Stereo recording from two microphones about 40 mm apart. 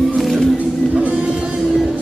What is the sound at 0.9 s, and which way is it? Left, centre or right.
Music, right.